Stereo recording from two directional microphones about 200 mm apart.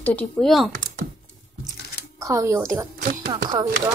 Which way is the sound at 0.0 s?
5° left (ahead or behind).